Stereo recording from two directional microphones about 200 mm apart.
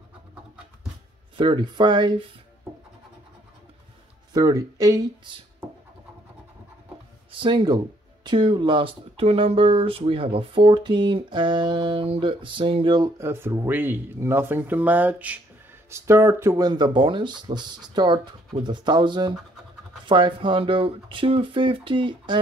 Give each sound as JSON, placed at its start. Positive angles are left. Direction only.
{"t": 1.3, "sound": "speech", "side_deg": -25}
{"t": 4.3, "sound": "speech", "side_deg": -15}
{"t": 7.3, "sound": "speech", "side_deg": -20}